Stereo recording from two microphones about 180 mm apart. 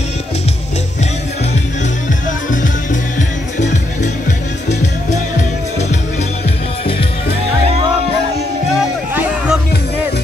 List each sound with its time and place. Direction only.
2.5 s music: 45° left (ahead or behind)
8.7 s music: 5° right (ahead or behind)